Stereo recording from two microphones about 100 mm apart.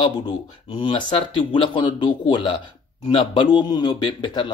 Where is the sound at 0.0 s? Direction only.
50° left (ahead or behind).